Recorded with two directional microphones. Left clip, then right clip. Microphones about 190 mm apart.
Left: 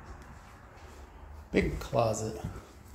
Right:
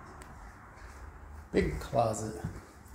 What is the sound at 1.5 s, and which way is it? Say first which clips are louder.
Speech: left 1 dB; 10° left (ahead or behind).